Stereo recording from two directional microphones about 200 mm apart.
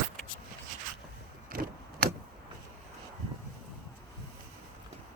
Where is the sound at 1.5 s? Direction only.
45° right (ahead or behind).